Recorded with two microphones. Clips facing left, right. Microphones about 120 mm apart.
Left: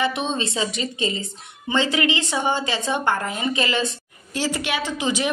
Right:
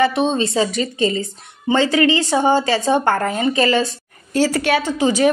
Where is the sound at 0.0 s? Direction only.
40° right (ahead or behind).